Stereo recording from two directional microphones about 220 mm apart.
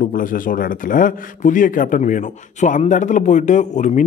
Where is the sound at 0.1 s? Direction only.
40° left (ahead or behind).